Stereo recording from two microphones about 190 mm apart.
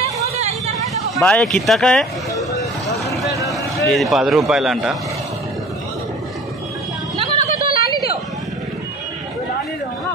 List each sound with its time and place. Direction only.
0.0 s vehicle: 35° right (ahead or behind)
1.2 s a man's voice: 5° left (ahead or behind)
2.9 s vehicle: centre (ahead or behind)
3.8 s a man's voice: centre (ahead or behind)
7.6 s a sound: 50° left (ahead or behind)